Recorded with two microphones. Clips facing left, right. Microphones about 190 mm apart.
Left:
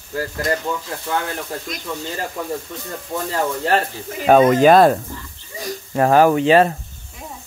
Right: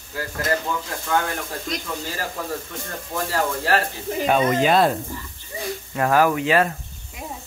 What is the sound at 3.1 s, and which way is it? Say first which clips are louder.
Speech: left 2 dB; 20° left (ahead or behind).